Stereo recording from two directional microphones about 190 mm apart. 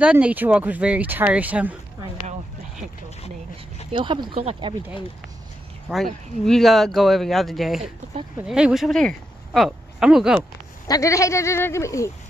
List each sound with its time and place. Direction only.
0.0 s speech: 5° right (ahead or behind)
3.9 s speech: 25° right (ahead or behind)
5.9 s speech: 10° right (ahead or behind)
6.4 s speech: centre (ahead or behind)
10.9 s speech: 15° left (ahead or behind)